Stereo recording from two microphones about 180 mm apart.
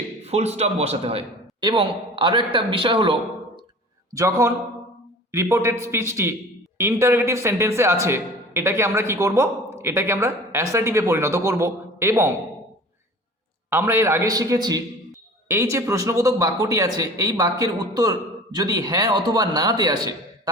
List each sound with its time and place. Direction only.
0.3 s a man's voice: 35° right (ahead or behind)
4.1 s speech: 15° right (ahead or behind)
13.7 s speech: 10° right (ahead or behind)